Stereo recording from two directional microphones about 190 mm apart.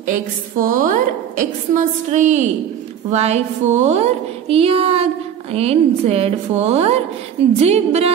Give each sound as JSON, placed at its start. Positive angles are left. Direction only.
{"t": 0.6, "sound": "a woman's voice", "side_deg": -45}